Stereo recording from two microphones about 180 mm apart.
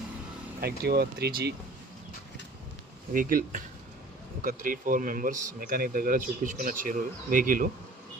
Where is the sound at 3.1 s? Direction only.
50° right (ahead or behind).